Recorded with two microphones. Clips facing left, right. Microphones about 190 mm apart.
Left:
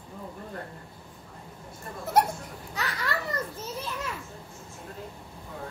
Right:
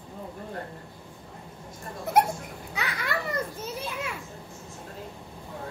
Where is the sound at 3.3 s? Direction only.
10° right (ahead or behind).